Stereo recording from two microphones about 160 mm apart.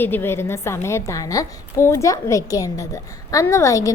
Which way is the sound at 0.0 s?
15° left (ahead or behind).